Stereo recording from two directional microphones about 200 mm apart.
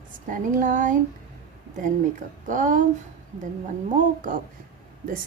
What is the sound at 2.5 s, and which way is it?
Speech, 40° right (ahead or behind).